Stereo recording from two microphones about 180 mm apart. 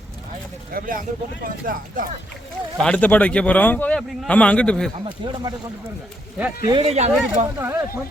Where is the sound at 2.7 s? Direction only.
5° left (ahead or behind).